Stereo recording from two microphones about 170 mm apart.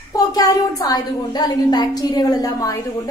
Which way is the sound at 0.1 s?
20° left (ahead or behind).